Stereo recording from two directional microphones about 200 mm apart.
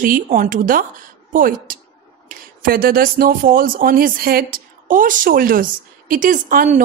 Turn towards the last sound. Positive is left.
turn(degrees=-40)  # may be behind; listen again after turning